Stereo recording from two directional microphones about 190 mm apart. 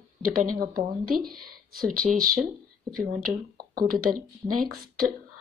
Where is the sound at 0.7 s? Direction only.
50° right (ahead or behind).